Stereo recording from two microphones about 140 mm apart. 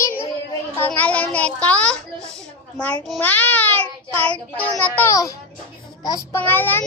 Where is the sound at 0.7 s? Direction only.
15° left (ahead or behind).